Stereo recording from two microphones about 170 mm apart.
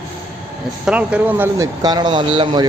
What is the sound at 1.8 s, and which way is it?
Speech, 25° right (ahead or behind).